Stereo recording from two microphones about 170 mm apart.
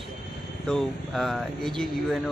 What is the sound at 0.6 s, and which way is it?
Speech, centre (ahead or behind).